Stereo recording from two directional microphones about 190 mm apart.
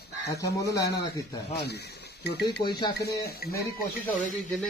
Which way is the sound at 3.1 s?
55° left (ahead or behind).